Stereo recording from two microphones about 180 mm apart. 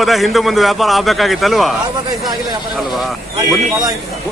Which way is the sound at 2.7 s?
Centre (ahead or behind).